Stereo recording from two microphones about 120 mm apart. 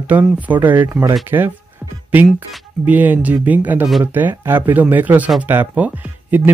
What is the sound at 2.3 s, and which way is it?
Speech, 15° right (ahead or behind).